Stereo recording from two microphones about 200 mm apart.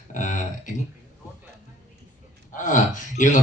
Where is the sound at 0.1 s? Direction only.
40° left (ahead or behind).